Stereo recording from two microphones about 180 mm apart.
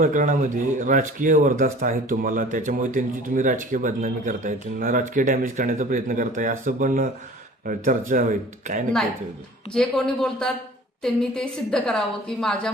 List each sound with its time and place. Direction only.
0.0 s speech: 45° right (ahead or behind)
9.7 s a woman's voice: 5° left (ahead or behind)